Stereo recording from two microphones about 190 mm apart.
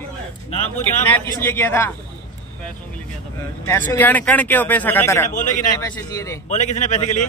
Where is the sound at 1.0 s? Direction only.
10° left (ahead or behind).